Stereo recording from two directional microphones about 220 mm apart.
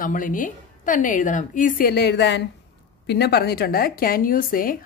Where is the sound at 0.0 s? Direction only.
35° left (ahead or behind).